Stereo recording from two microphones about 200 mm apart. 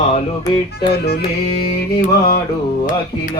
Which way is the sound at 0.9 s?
55° left (ahead or behind).